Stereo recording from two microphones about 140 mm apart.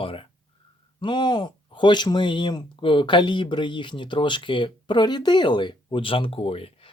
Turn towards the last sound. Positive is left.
turn(degrees=40)  # may be behind; listen again after turning